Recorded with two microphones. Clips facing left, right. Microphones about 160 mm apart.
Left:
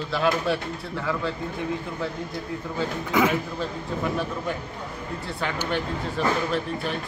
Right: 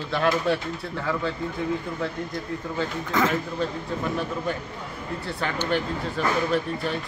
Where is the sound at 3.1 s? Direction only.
10° left (ahead or behind).